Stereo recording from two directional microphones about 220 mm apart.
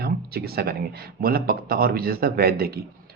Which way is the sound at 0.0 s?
45° right (ahead or behind).